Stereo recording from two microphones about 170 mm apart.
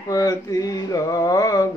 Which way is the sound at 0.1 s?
20° left (ahead or behind).